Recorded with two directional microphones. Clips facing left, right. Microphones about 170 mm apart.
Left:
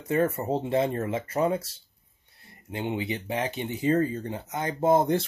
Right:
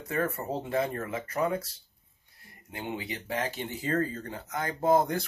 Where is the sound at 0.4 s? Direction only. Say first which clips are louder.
Left 5 dB; 25° left (ahead or behind).